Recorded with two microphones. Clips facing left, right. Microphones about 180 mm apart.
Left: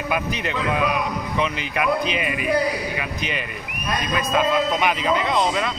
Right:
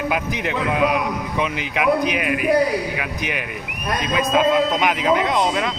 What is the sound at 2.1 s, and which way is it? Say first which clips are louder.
Speech: right 4 dB; 70° right (ahead or behind).